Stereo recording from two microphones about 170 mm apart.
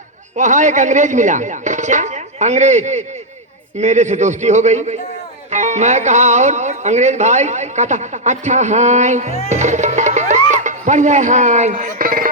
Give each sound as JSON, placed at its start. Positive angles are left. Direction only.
{"t": 0.3, "sound": "speech", "side_deg": -45}
{"t": 9.5, "sound": "music", "side_deg": -45}
{"t": 10.5, "sound": "a sound", "side_deg": -45}